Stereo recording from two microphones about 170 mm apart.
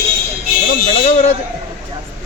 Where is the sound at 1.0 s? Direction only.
40° left (ahead or behind).